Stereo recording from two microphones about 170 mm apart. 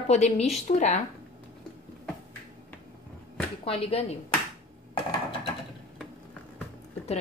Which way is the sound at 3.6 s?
35° left (ahead or behind).